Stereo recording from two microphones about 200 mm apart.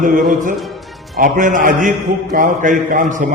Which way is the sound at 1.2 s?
40° right (ahead or behind).